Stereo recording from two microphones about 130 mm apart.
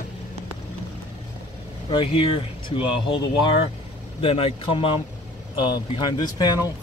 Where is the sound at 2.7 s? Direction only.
45° left (ahead or behind).